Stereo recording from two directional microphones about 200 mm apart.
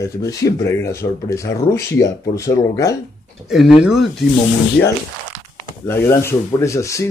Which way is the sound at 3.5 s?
Centre (ahead or behind).